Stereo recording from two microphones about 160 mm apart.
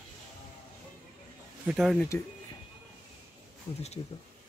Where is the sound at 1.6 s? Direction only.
5° right (ahead or behind).